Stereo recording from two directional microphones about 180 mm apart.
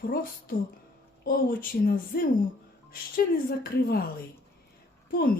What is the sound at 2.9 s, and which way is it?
A woman's voice, 55° left (ahead or behind).